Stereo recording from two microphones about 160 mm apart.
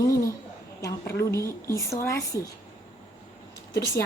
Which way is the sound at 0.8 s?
20° left (ahead or behind).